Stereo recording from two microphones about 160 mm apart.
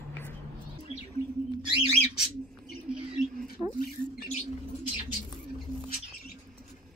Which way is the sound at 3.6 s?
10° right (ahead or behind).